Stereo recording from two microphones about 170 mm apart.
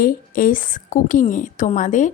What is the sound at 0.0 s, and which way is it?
A woman's voice, 55° left (ahead or behind).